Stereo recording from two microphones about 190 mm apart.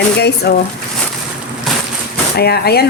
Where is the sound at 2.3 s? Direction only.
55° left (ahead or behind).